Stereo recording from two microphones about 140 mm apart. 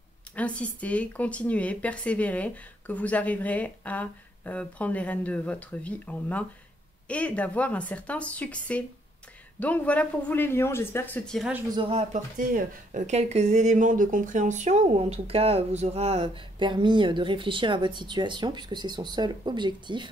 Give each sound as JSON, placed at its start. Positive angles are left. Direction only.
{"t": 0.4, "sound": "speech", "side_deg": 10}
{"t": 11.2, "sound": "speech", "side_deg": 0}
{"t": 11.7, "sound": "speech", "side_deg": -40}
{"t": 12.1, "sound": "speech", "side_deg": -65}